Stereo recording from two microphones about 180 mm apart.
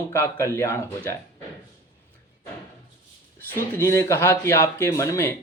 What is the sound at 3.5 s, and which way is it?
Speech, 15° left (ahead or behind).